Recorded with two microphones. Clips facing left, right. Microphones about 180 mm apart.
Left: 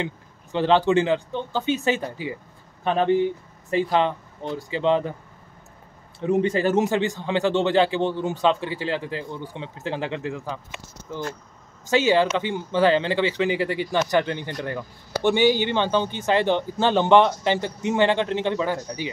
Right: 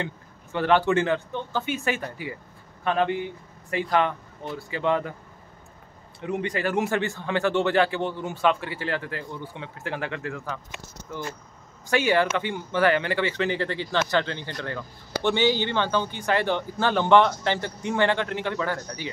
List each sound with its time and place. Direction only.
0.0 s speech: 20° left (ahead or behind)
6.2 s speech: 25° left (ahead or behind)
12.1 s speech: 20° left (ahead or behind)